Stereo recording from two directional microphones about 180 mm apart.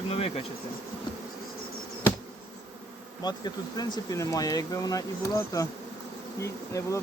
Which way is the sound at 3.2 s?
25° left (ahead or behind).